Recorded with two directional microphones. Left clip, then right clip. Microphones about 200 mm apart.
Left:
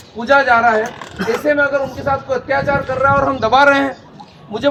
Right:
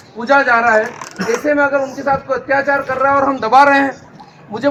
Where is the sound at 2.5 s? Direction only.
15° left (ahead or behind).